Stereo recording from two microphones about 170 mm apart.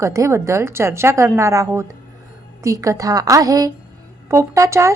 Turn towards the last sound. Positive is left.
turn(degrees=-15)  # may be behind; listen again after turning